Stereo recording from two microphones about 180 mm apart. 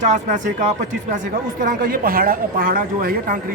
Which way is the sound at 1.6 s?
50° right (ahead or behind).